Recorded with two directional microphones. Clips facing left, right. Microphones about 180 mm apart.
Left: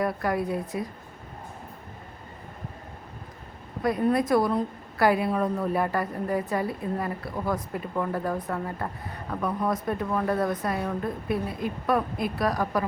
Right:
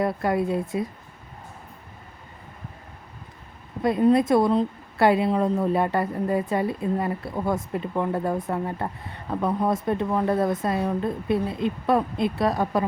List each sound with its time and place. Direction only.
0.0 s speech: 25° right (ahead or behind)
3.8 s speech: 25° right (ahead or behind)